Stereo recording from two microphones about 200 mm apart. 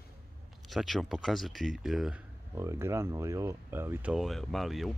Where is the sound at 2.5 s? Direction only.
15° right (ahead or behind).